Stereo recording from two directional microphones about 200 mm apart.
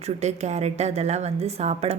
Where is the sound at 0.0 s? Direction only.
35° right (ahead or behind).